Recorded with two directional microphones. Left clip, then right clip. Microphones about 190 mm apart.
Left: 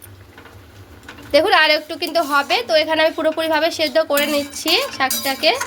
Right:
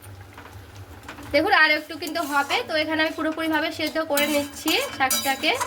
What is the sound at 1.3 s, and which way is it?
A woman's voice, 40° left (ahead or behind).